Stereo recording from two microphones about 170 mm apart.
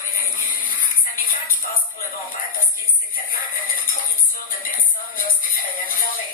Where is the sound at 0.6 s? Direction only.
55° left (ahead or behind).